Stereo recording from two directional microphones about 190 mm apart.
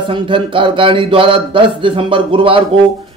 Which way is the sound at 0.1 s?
25° right (ahead or behind).